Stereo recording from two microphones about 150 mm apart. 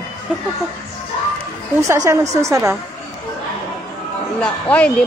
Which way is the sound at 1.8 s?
20° right (ahead or behind).